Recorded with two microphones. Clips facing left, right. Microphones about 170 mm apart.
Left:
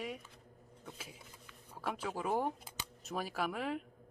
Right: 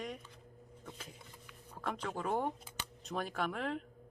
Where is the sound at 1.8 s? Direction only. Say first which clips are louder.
Even; 5° left (ahead or behind).